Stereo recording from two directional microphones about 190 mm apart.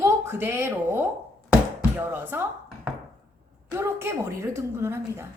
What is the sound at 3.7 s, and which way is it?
Speech, 15° right (ahead or behind).